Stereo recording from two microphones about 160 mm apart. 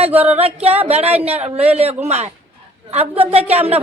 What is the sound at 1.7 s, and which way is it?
Speech, 40° right (ahead or behind).